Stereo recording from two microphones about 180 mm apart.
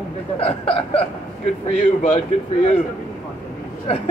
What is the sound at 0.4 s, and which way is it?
Speech, 30° left (ahead or behind).